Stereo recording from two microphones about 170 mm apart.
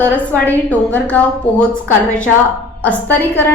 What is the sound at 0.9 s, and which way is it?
A woman's voice, 10° left (ahead or behind).